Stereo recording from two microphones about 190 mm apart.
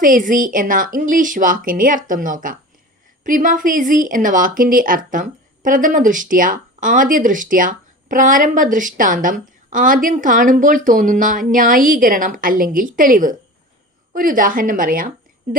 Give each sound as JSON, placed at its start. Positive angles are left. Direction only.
{"t": 0.0, "sound": "a woman's voice", "side_deg": -45}